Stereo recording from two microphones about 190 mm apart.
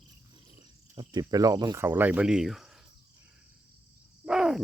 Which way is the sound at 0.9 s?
25° right (ahead or behind).